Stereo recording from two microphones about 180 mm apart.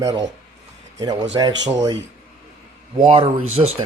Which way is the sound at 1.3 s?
25° right (ahead or behind).